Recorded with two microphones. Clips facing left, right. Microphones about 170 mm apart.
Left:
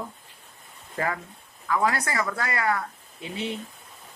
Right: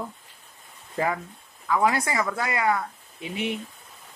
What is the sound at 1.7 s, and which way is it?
Speech, 15° right (ahead or behind).